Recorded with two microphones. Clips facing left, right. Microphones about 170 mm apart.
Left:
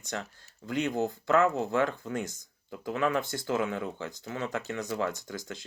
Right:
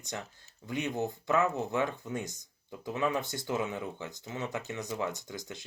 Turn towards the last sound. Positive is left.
turn(degrees=-20)  # may be behind; listen again after turning